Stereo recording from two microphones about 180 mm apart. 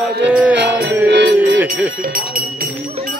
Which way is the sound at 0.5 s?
70° right (ahead or behind).